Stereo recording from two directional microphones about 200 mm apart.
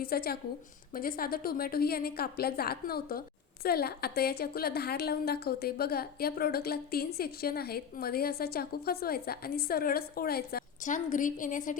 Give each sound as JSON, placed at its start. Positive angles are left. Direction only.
{"t": 0.0, "sound": "a woman's voice", "side_deg": 50}